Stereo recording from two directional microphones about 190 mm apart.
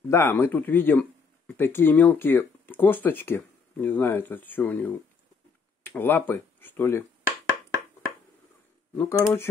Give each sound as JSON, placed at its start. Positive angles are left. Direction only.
{"t": 0.1, "sound": "speech", "side_deg": 15}
{"t": 8.9, "sound": "speech", "side_deg": 15}